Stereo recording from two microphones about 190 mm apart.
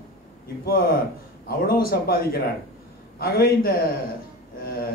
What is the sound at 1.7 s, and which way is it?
A man's voice, 50° left (ahead or behind).